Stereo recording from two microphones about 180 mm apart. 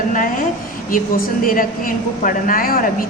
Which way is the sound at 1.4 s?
50° left (ahead or behind).